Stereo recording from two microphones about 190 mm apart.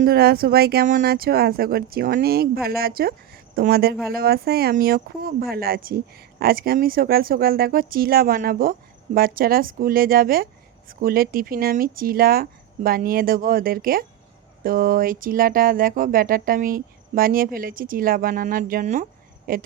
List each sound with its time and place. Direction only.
0.0 s speech: 55° right (ahead or behind)